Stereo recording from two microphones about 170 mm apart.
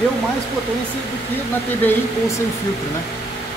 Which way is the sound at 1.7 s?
15° left (ahead or behind).